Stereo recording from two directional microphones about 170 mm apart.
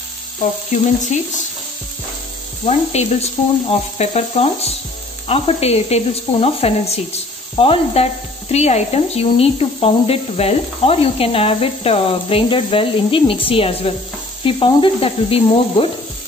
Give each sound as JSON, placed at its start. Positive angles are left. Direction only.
{"t": 1.1, "sound": "speech", "side_deg": 45}
{"t": 2.6, "sound": "speech", "side_deg": 40}